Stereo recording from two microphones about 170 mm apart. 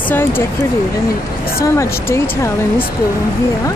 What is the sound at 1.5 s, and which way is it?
Speech, 15° left (ahead or behind).